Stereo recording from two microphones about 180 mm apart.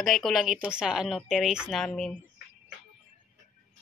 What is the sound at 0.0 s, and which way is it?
A woman's voice, centre (ahead or behind).